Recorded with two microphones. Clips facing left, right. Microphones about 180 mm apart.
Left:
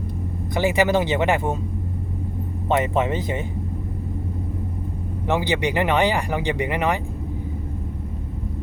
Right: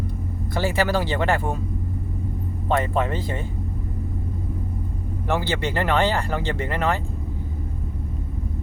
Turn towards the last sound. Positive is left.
turn(degrees=15)  # may be behind; listen again after turning